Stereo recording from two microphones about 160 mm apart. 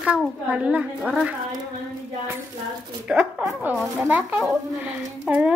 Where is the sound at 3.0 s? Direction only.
10° right (ahead or behind).